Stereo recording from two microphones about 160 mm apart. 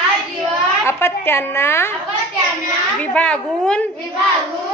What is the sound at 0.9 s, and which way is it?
A woman's voice, 15° left (ahead or behind).